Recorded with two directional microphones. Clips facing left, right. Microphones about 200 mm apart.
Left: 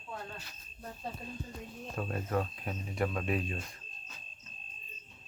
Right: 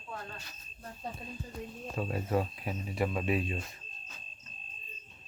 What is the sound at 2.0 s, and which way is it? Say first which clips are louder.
Speech: right 2 dB; 5° right (ahead or behind).